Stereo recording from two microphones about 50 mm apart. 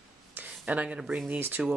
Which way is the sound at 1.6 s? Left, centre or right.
Centre.